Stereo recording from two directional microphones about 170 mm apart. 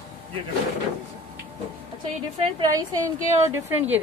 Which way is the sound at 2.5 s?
20° right (ahead or behind).